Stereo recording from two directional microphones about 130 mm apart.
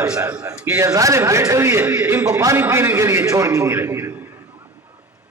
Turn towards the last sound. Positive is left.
turn(degrees=-25)  # may be behind; listen again after turning